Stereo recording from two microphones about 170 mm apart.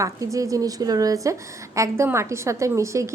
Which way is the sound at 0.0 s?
20° right (ahead or behind).